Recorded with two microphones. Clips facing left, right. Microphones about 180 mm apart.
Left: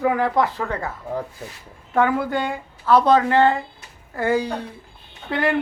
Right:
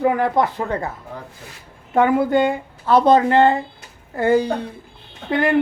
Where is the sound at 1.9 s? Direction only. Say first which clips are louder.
Right 4 dB; 20° right (ahead or behind).